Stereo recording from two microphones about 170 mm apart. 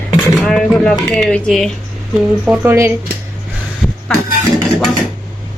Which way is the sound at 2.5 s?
15° right (ahead or behind).